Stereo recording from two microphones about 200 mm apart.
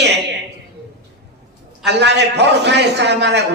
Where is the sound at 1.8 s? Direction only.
60° right (ahead or behind).